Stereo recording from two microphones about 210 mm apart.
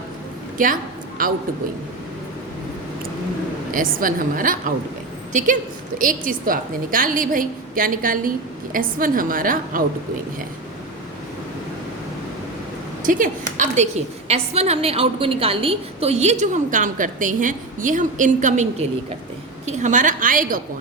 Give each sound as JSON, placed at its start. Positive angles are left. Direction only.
{"t": 0.6, "sound": "a woman's voice", "side_deg": -40}
{"t": 3.7, "sound": "a woman's voice", "side_deg": -40}
{"t": 13.1, "sound": "a woman's voice", "side_deg": -40}